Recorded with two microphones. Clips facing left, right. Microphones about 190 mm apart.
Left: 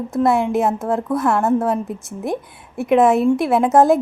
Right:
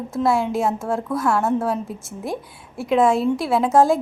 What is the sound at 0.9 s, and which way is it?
Speech, centre (ahead or behind).